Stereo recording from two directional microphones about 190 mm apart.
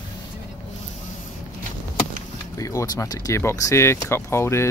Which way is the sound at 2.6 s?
15° left (ahead or behind).